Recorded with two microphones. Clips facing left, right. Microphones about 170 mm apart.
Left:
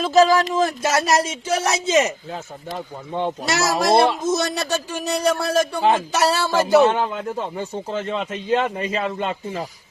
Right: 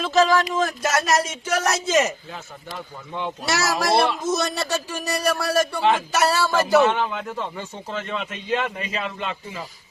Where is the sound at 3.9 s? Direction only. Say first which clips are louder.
Left 4 dB; 20° left (ahead or behind).